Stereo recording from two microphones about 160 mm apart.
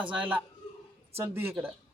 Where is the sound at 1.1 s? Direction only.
15° right (ahead or behind).